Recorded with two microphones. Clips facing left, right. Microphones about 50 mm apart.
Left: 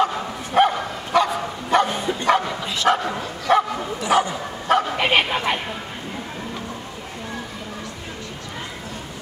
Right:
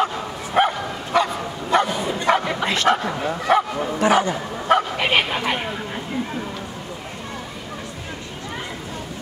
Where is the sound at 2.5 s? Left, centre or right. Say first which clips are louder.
Right 4 dB; right.